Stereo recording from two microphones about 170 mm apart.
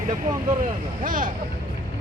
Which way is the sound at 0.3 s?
50° right (ahead or behind).